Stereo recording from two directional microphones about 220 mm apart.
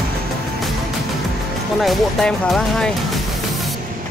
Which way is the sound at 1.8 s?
Centre (ahead or behind).